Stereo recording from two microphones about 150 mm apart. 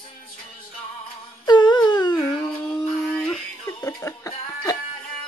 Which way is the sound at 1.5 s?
30° left (ahead or behind).